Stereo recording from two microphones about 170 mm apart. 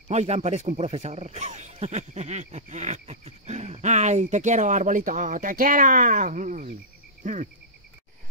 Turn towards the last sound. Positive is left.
turn(degrees=-45)  # may be behind; listen again after turning